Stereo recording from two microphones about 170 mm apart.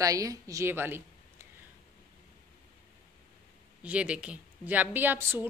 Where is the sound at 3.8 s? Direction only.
5° right (ahead or behind).